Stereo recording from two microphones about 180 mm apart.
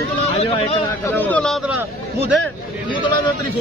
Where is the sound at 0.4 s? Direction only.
35° left (ahead or behind).